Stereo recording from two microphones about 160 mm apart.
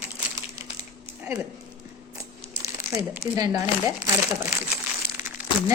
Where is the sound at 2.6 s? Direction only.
20° right (ahead or behind).